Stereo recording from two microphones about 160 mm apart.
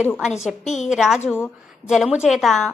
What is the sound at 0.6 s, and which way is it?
Speech, 50° left (ahead or behind).